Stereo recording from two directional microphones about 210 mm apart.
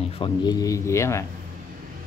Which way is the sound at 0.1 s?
20° left (ahead or behind).